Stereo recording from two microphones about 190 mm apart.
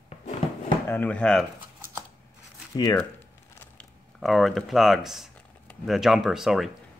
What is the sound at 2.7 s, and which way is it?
Speech, 20° left (ahead or behind).